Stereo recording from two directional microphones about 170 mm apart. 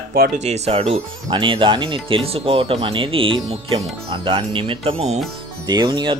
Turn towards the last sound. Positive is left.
turn(degrees=-25)  # may be behind; listen again after turning